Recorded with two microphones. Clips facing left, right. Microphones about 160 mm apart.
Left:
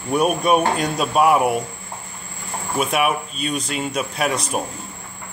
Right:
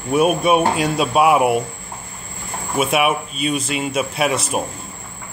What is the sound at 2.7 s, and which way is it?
Speech, 5° right (ahead or behind).